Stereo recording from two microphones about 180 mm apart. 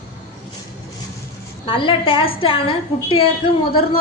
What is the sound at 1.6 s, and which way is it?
A woman's voice, 30° left (ahead or behind).